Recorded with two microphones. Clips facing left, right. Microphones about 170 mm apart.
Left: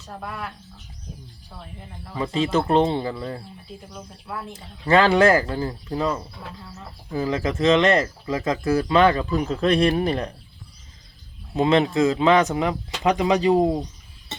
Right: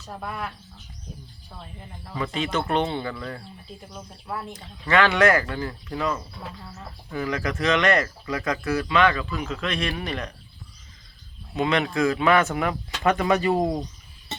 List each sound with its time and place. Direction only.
0.1 s speech: centre (ahead or behind)
2.1 s speech: 25° left (ahead or behind)
3.9 s speech: centre (ahead or behind)
4.5 s speech: 30° left (ahead or behind)
11.5 s speech: 30° left (ahead or behind)